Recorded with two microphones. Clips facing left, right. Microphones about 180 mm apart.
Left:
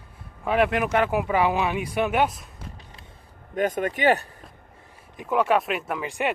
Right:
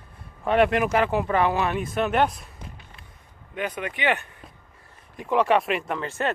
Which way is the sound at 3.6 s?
45° left (ahead or behind).